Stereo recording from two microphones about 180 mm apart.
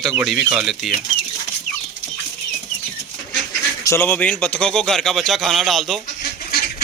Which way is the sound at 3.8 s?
15° left (ahead or behind).